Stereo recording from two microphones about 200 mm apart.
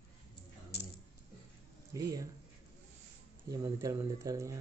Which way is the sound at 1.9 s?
15° right (ahead or behind).